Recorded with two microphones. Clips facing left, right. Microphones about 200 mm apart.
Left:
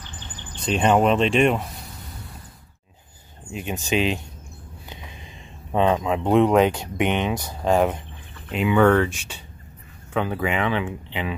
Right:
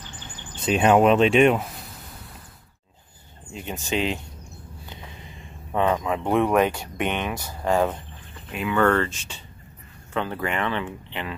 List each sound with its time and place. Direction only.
0.6 s speech: 5° right (ahead or behind)
3.5 s speech: 15° left (ahead or behind)